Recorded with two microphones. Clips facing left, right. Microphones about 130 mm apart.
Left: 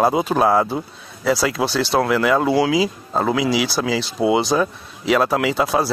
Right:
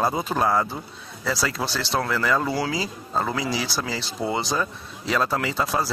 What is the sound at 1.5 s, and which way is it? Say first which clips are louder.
Speech: left 7 dB; 60° left (ahead or behind).